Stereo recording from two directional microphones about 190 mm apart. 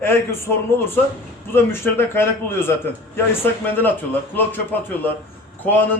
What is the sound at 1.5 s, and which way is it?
Speech, 10° left (ahead or behind).